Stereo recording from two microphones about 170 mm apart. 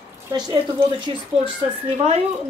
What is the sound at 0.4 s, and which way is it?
Speech, 25° right (ahead or behind).